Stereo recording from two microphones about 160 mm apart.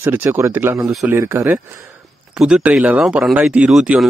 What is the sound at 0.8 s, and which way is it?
Speech, 5° right (ahead or behind).